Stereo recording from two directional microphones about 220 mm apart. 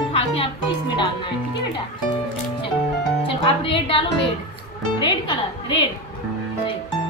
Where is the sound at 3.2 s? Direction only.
25° left (ahead or behind).